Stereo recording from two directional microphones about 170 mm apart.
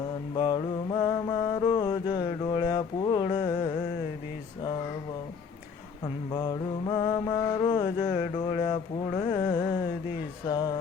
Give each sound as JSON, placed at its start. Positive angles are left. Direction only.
{"t": 0.3, "sound": "mantra", "side_deg": 25}
{"t": 6.3, "sound": "mantra", "side_deg": 25}
{"t": 10.5, "sound": "music", "side_deg": 25}